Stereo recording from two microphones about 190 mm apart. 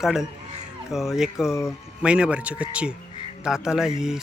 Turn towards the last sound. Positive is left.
turn(degrees=-5)  # may be behind; listen again after turning